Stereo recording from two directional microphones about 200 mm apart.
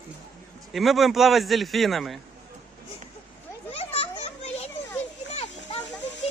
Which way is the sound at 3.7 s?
30° left (ahead or behind).